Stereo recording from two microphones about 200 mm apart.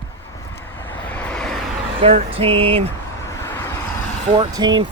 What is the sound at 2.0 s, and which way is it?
Speech, 30° right (ahead or behind).